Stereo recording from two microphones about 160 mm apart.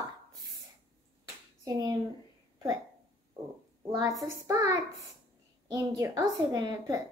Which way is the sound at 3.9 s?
20° right (ahead or behind).